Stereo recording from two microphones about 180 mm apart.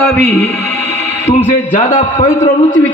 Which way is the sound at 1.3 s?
35° left (ahead or behind).